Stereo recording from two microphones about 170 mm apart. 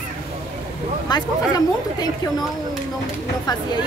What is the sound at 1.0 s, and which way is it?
A woman's voice, 25° left (ahead or behind).